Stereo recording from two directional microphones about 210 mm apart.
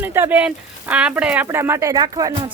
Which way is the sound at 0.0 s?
10° right (ahead or behind).